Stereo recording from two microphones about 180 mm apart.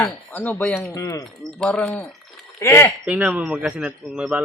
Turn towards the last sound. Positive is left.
turn(degrees=-5)  # may be behind; listen again after turning